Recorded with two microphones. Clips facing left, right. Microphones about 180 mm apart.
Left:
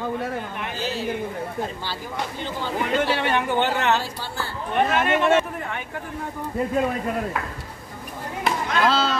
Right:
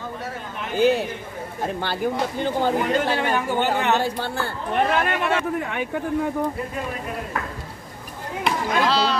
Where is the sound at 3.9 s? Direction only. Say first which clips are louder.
Right 5 dB; 60° right (ahead or behind).